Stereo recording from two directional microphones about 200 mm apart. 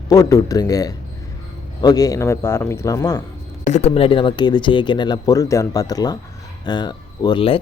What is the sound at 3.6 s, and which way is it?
Speech, 35° left (ahead or behind).